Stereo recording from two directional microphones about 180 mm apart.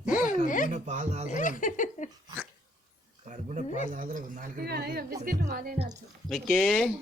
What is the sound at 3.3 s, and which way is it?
Speech, 40° right (ahead or behind).